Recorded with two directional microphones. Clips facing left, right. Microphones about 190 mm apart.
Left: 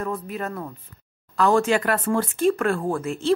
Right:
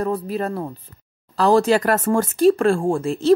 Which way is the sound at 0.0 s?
35° right (ahead or behind).